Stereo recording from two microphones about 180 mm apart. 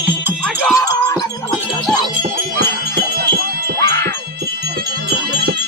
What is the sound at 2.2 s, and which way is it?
Music, 55° right (ahead or behind).